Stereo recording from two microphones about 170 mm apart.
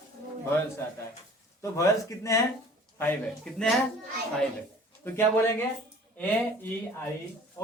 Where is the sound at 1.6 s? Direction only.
20° left (ahead or behind).